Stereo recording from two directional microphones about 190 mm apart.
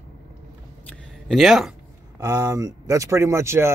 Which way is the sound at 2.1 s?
20° right (ahead or behind).